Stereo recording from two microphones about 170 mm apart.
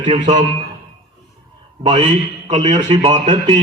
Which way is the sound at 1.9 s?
40° right (ahead or behind).